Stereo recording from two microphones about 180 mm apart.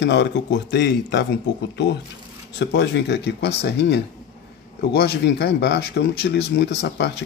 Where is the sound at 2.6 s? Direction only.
75° left (ahead or behind).